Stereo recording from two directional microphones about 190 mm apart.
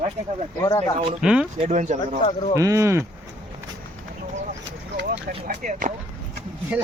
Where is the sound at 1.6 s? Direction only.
40° right (ahead or behind).